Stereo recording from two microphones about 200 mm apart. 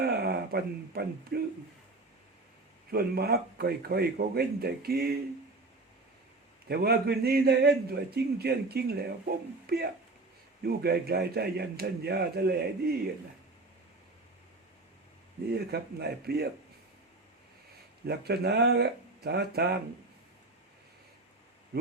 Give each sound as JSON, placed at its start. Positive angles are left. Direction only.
{"t": 0.0, "sound": "speech", "side_deg": -50}
{"t": 2.9, "sound": "a man's voice", "side_deg": -50}
{"t": 6.7, "sound": "a man's voice", "side_deg": -50}
{"t": 15.5, "sound": "a man's voice", "side_deg": -55}
{"t": 18.0, "sound": "a man's voice", "side_deg": -50}